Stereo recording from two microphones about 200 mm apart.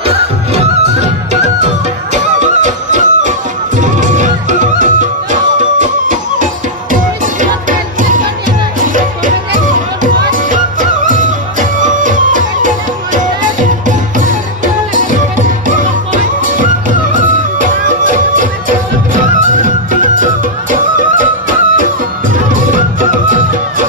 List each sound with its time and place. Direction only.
0.0 s music: 30° right (ahead or behind)
10.3 s music: 40° right (ahead or behind)